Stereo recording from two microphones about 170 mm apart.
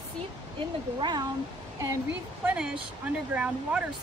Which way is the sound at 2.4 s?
5° right (ahead or behind).